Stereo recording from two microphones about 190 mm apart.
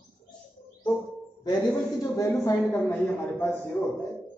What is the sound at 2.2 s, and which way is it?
Speech, 15° left (ahead or behind).